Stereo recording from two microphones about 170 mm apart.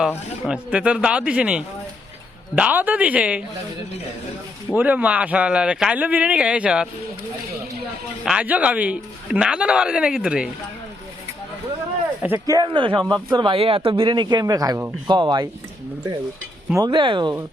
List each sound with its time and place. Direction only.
0.4 s a man's voice: 5° right (ahead or behind)
4.7 s a man's voice: 10° right (ahead or behind)
8.2 s a man's voice: 5° right (ahead or behind)
12.2 s a man's voice: 10° right (ahead or behind)
12.5 s speech: 30° right (ahead or behind)
16.7 s speech: 25° right (ahead or behind)